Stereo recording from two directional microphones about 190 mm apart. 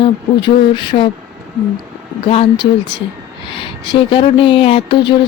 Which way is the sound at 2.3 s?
30° left (ahead or behind).